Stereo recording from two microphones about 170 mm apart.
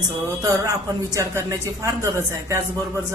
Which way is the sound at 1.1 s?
20° right (ahead or behind).